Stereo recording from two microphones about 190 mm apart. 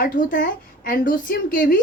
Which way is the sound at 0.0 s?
45° left (ahead or behind).